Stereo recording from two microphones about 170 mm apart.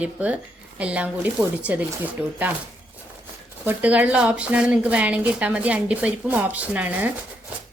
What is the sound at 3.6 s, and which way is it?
A woman's voice, 10° right (ahead or behind).